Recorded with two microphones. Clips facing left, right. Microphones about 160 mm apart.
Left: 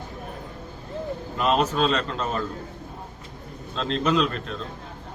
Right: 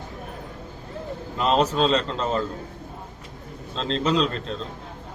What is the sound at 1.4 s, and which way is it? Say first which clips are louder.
A man's voice: right 1 dB; 30° right (ahead or behind).